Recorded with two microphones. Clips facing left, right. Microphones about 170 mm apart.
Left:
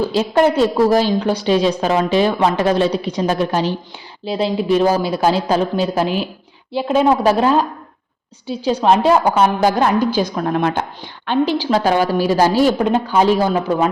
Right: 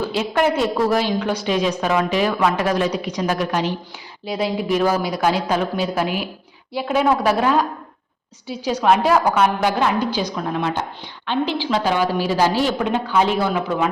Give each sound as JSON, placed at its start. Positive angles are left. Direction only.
{"t": 0.1, "sound": "a woman's voice", "side_deg": 30}
{"t": 11.3, "sound": "a woman's voice", "side_deg": 40}